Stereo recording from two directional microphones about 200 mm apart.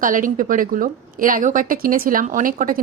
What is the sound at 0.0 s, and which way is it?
A woman's voice, 40° right (ahead or behind).